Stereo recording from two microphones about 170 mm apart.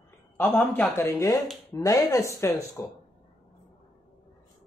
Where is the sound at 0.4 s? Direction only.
10° left (ahead or behind).